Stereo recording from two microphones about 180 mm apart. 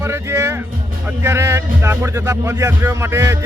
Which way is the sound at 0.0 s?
15° right (ahead or behind).